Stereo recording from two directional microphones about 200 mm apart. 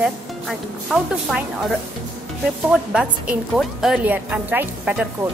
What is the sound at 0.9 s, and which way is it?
Speech, centre (ahead or behind).